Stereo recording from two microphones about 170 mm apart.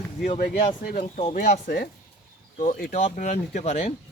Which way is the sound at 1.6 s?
65° left (ahead or behind).